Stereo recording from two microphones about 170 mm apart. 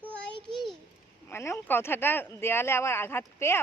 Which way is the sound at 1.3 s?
15° left (ahead or behind).